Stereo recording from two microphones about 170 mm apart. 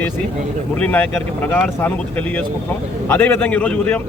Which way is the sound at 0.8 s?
10° left (ahead or behind).